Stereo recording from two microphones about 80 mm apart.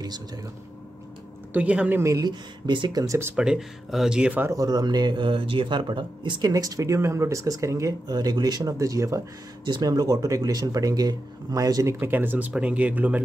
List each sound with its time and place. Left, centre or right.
1.5 s speech: centre
2.0 s speech: right
2.2 s speech: right
3.3 s speech: centre
4.5 s speech: right
6.5 s speech: right
8.7 s speech: right
11.9 s speech: right